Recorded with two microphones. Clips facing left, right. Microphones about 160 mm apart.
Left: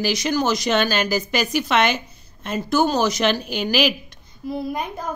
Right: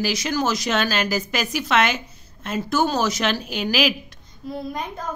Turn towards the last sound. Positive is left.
turn(degrees=10)  # may be behind; listen again after turning